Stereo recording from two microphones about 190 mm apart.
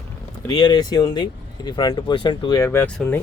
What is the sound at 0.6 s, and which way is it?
Speech, 20° left (ahead or behind).